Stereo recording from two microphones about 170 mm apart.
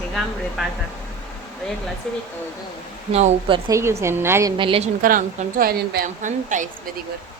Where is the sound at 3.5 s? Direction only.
20° right (ahead or behind).